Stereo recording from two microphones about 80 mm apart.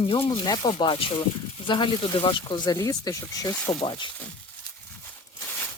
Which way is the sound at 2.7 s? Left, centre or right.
Left.